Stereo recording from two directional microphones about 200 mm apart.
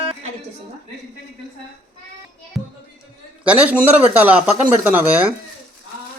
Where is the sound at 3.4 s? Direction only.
5° right (ahead or behind).